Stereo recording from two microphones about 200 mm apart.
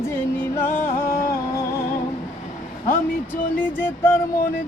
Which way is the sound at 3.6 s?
10° left (ahead or behind).